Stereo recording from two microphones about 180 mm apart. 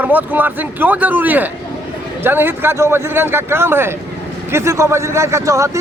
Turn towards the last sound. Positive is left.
turn(degrees=-15)  # may be behind; listen again after turning